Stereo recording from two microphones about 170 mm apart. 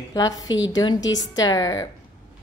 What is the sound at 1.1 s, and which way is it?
Speech, 20° left (ahead or behind).